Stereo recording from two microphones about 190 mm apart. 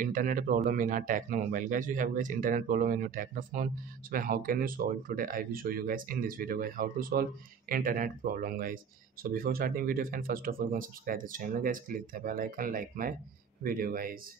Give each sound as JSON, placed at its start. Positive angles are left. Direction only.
{"t": 0.0, "sound": "speech", "side_deg": -45}